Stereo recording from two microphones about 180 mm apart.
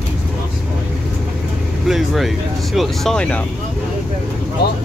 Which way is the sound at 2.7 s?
Centre (ahead or behind).